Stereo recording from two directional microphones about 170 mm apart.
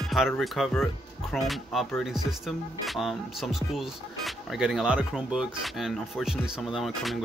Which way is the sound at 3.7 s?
Centre (ahead or behind).